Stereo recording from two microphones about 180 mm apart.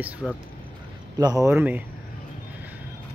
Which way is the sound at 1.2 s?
20° right (ahead or behind).